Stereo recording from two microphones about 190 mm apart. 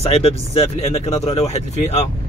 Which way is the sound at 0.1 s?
30° left (ahead or behind).